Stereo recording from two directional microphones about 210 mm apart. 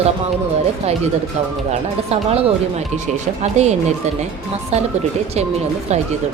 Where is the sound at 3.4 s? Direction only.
30° right (ahead or behind).